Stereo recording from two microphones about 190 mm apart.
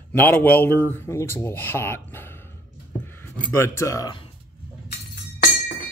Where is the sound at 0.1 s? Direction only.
10° left (ahead or behind).